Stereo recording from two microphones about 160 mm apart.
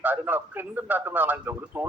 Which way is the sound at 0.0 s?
10° right (ahead or behind).